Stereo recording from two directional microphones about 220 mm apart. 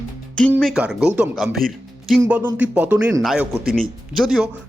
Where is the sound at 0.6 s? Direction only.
Centre (ahead or behind).